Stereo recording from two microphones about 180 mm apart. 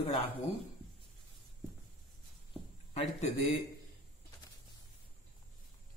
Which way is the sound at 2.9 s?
30° left (ahead or behind).